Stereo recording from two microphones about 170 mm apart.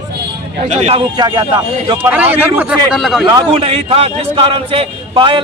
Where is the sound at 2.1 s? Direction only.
10° right (ahead or behind).